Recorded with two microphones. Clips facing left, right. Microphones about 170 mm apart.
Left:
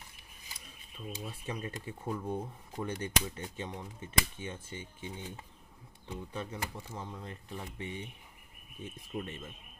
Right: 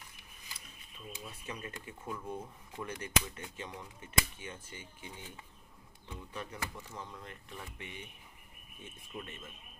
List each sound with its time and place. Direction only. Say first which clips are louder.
1.2 s speech: left 4 dB; 30° left (ahead or behind)
9.1 s speech: left 6 dB; 35° left (ahead or behind)